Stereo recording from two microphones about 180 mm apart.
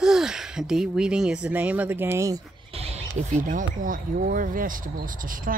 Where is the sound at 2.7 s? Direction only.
35° right (ahead or behind).